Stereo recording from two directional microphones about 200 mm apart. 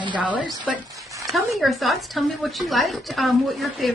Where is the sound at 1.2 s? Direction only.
Centre (ahead or behind).